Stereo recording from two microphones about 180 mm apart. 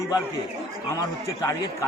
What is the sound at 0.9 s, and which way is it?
Speech, 20° left (ahead or behind).